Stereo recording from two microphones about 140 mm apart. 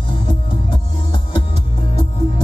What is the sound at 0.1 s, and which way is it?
Music, 35° left (ahead or behind).